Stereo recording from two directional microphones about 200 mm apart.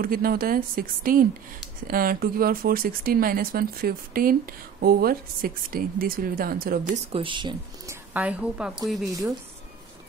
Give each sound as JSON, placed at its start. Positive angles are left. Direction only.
{"t": 0.0, "sound": "speech", "side_deg": -45}
{"t": 7.1, "sound": "speech", "side_deg": -25}
{"t": 9.0, "sound": "speech", "side_deg": -15}